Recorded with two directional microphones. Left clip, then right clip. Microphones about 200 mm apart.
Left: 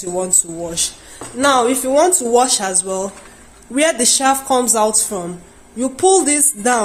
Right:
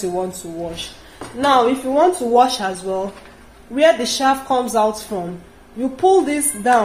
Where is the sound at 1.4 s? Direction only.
50° left (ahead or behind).